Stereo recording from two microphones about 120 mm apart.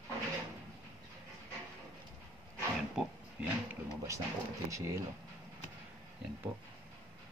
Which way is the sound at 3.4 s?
10° right (ahead or behind).